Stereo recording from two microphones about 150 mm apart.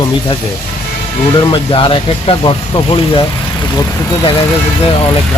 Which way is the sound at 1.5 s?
35° left (ahead or behind).